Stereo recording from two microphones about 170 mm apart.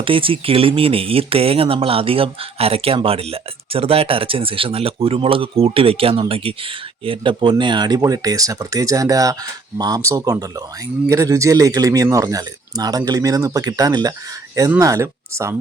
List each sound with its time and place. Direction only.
0.0 s speech: 30° right (ahead or behind)